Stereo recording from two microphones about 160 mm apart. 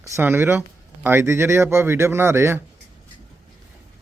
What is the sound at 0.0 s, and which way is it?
Speech, 15° right (ahead or behind).